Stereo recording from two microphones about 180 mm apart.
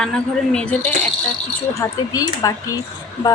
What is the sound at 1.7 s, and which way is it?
Speech, 20° left (ahead or behind).